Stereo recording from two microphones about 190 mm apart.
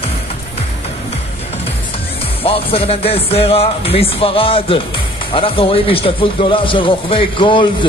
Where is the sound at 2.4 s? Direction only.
30° left (ahead or behind).